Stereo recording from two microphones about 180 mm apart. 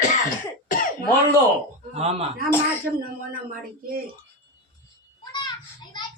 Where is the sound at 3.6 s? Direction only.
50° right (ahead or behind).